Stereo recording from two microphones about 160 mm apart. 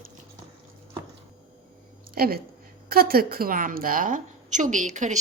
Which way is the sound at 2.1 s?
70° right (ahead or behind).